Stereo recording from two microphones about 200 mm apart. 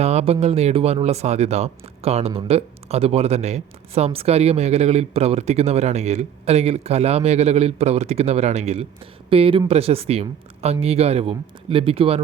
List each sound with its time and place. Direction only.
0.0 s speech: 30° right (ahead or behind)